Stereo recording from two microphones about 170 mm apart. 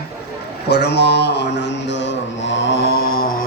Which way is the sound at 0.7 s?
80° left.